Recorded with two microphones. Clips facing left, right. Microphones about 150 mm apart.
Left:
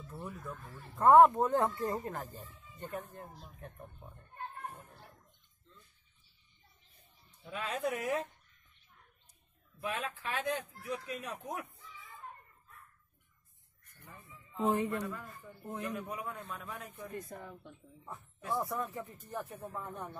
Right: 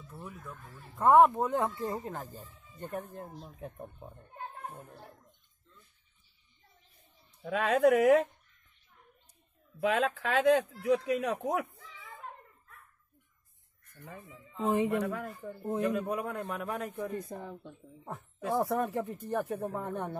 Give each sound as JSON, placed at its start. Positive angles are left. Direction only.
{"t": 0.1, "sound": "speech", "side_deg": 0}
{"t": 1.0, "sound": "speech", "side_deg": -15}
{"t": 3.0, "sound": "speech", "side_deg": -65}
{"t": 7.4, "sound": "speech", "side_deg": -80}
{"t": 9.8, "sound": "speech", "side_deg": -90}
{"t": 14.0, "sound": "a man's voice", "side_deg": -90}
{"t": 15.8, "sound": "speech", "side_deg": -75}
{"t": 17.3, "sound": "a woman's voice", "side_deg": -20}
{"t": 18.0, "sound": "speech", "side_deg": -80}